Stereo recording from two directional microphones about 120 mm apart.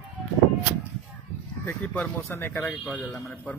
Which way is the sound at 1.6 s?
15° left (ahead or behind).